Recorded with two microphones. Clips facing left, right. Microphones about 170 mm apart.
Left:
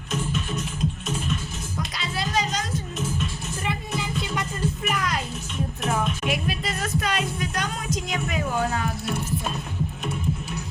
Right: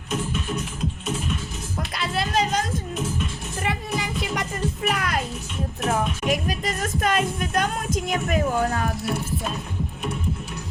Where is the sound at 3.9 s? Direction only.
90° right.